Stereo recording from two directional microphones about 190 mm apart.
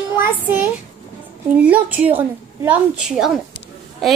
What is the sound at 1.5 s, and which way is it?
A woman's voice, 10° right (ahead or behind).